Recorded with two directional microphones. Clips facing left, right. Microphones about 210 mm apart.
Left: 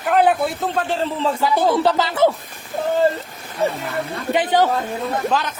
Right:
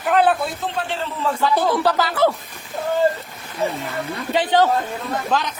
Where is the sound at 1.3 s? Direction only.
10° left (ahead or behind).